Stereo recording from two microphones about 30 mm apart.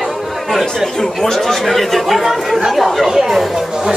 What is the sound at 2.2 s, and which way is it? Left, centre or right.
Speech, centre.